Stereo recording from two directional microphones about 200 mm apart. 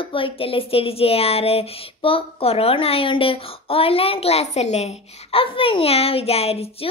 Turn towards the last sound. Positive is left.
turn(degrees=30)  # may be behind; listen again after turning